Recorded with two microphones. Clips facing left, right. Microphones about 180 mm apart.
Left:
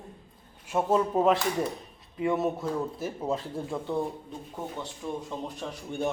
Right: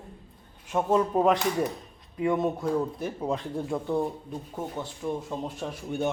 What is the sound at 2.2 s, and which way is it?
Speech, 5° left (ahead or behind).